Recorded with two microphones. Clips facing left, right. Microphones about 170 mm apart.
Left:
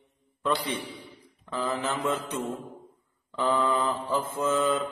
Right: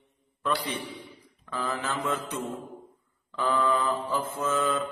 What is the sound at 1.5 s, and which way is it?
Mantra, 20° left (ahead or behind).